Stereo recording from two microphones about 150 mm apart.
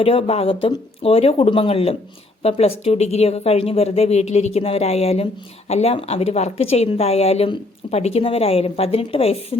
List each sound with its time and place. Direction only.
0.0 s speech: 40° left (ahead or behind)